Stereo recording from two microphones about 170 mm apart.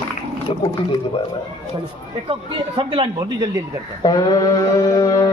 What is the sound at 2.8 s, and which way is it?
Speech, 30° right (ahead or behind).